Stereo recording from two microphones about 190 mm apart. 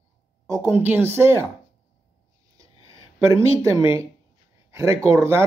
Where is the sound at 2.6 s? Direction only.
20° right (ahead or behind).